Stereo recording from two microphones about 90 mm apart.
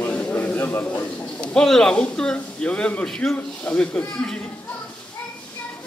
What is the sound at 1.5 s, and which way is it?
Speech, 10° left (ahead or behind).